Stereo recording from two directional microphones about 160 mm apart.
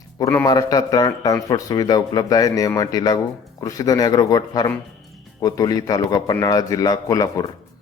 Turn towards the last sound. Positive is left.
turn(degrees=20)  # may be behind; listen again after turning